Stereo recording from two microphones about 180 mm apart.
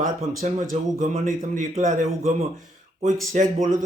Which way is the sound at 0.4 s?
45° right (ahead or behind).